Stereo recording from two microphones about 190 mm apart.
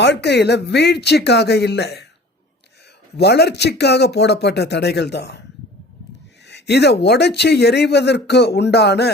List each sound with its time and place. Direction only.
0.0 s speech: 65° left (ahead or behind)
3.2 s speech: 60° left (ahead or behind)
6.5 s speech: 65° left (ahead or behind)